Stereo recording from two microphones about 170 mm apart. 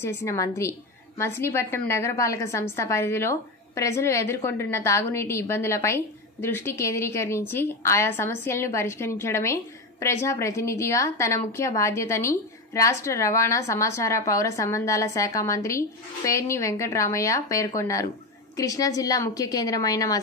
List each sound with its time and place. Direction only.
0.0 s a woman's voice: 15° left (ahead or behind)